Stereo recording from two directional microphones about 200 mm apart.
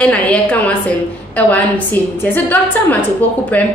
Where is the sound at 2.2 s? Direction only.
10° left (ahead or behind).